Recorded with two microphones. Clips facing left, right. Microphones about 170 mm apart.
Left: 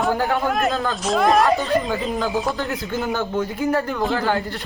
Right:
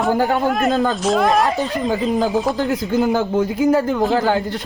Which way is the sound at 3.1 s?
20° right (ahead or behind).